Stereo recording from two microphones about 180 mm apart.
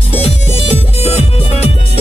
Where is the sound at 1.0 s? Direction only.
35° left (ahead or behind).